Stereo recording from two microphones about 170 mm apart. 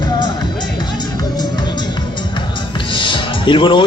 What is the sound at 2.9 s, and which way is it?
Music, 30° left (ahead or behind).